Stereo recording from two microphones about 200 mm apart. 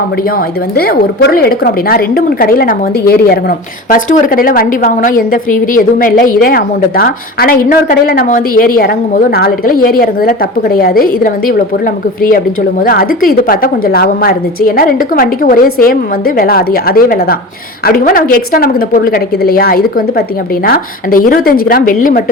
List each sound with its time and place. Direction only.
0.3 s a woman's voice: 55° left (ahead or behind)
12.8 s a woman's voice: 45° left (ahead or behind)